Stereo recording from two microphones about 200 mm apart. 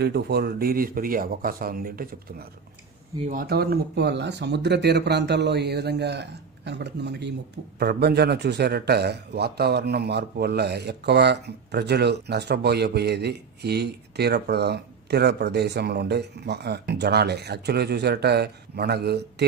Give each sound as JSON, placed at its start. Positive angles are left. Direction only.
{"t": 0.0, "sound": "a man's voice", "side_deg": -55}